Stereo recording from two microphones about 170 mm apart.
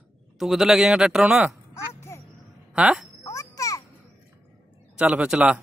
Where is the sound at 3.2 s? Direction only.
20° left (ahead or behind).